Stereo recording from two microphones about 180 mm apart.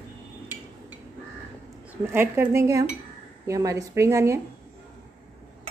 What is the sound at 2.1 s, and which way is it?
Speech, 10° right (ahead or behind).